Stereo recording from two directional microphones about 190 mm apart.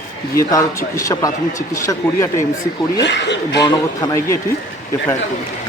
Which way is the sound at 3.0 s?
65° left (ahead or behind).